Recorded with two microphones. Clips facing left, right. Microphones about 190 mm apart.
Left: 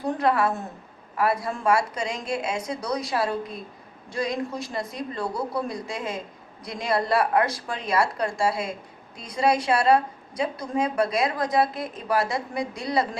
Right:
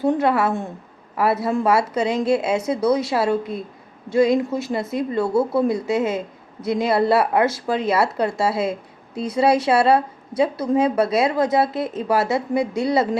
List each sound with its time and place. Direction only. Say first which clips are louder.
0.0 s speech: right 5 dB; 25° right (ahead or behind)